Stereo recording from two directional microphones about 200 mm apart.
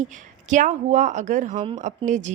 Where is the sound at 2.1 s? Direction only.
40° right (ahead or behind).